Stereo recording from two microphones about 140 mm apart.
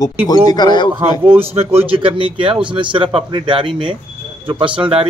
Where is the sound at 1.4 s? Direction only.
45° right (ahead or behind).